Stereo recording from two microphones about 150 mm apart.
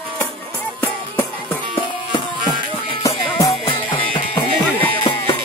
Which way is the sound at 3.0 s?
25° left (ahead or behind).